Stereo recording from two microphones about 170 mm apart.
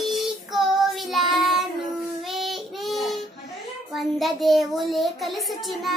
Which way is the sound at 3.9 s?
Centre (ahead or behind).